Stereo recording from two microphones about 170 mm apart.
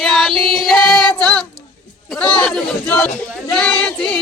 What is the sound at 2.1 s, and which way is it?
Speech, 5° left (ahead or behind).